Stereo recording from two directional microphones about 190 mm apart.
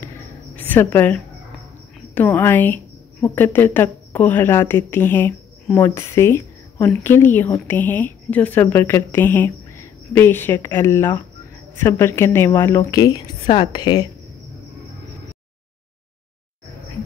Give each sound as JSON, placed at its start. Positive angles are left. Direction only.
{"t": 0.6, "sound": "a woman's voice", "side_deg": 10}
{"t": 2.1, "sound": "a woman's voice", "side_deg": 10}